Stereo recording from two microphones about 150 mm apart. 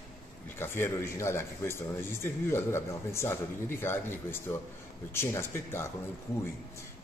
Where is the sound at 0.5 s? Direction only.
15° left (ahead or behind).